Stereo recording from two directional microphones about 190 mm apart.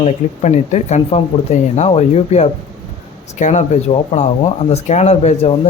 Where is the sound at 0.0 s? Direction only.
35° left (ahead or behind).